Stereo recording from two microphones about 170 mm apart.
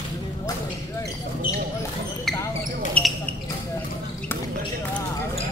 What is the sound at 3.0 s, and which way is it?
Speech, 10° left (ahead or behind).